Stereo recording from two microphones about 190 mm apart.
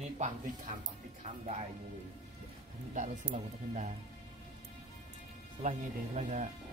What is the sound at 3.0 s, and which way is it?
Speech, 40° right (ahead or behind).